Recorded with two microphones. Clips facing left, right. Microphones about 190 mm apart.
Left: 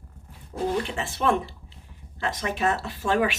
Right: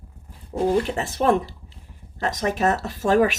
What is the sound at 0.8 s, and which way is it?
Speech, 40° right (ahead or behind).